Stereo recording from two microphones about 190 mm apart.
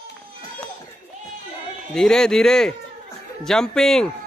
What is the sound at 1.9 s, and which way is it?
Speech, 5° left (ahead or behind).